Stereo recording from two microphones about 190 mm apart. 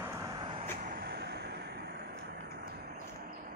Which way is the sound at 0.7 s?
45° right (ahead or behind).